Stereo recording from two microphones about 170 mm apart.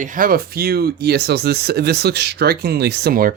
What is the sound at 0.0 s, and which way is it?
Speech, 50° right (ahead or behind).